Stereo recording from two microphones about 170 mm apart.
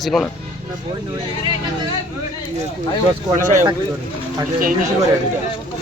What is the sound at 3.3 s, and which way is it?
Speech, 50° right (ahead or behind).